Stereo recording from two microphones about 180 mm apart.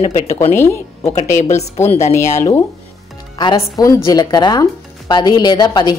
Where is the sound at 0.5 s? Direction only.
15° left (ahead or behind).